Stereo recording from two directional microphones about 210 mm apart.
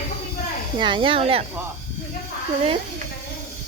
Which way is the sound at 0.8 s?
20° right (ahead or behind).